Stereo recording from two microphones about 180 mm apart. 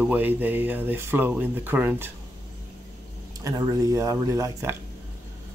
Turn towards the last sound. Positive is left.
turn(degrees=-15)  # may be behind; listen again after turning